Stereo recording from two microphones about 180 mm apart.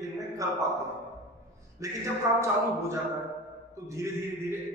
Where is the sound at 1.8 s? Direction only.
15° right (ahead or behind).